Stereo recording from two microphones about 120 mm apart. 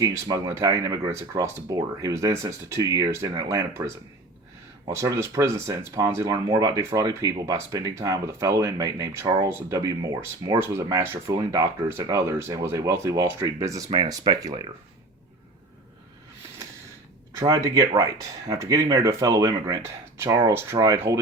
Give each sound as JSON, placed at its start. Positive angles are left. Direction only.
{"t": 0.0, "sound": "speech", "side_deg": -30}
{"t": 10.8, "sound": "speech", "side_deg": -20}
{"t": 17.3, "sound": "speech", "side_deg": -30}